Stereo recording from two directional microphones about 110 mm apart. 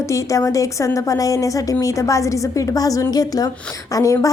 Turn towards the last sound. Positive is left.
turn(degrees=30)  # may be behind; listen again after turning